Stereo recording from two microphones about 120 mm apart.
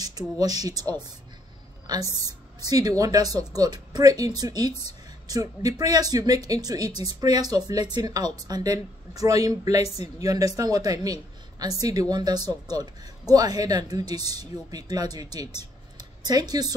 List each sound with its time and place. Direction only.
0.4 s a woman's voice: 30° right (ahead or behind)